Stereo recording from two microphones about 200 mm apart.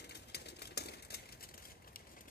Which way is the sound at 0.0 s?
55° left (ahead or behind).